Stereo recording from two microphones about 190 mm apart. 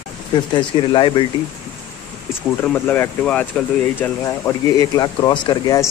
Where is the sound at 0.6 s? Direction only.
25° left (ahead or behind).